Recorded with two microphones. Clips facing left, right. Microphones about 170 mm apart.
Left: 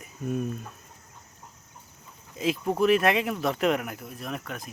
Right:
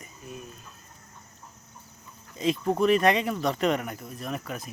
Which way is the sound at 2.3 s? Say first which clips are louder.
Even; 5° left (ahead or behind).